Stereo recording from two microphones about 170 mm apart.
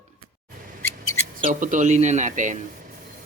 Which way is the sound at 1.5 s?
50° right (ahead or behind).